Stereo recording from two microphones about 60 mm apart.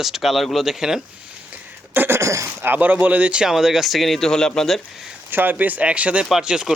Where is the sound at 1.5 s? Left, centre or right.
Right.